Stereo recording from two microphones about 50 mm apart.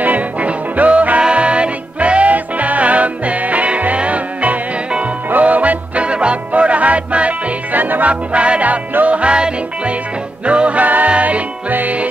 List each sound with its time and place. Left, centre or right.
0.0 s music: right